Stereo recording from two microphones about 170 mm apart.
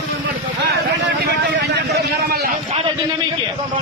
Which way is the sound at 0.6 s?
70° right (ahead or behind).